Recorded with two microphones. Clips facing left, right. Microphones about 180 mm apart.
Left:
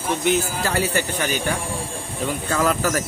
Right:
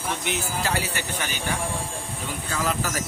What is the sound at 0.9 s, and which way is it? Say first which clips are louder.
Speech: left 7 dB; 45° left (ahead or behind).